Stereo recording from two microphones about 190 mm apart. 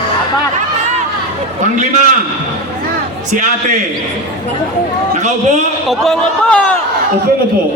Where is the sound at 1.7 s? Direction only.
40° right (ahead or behind).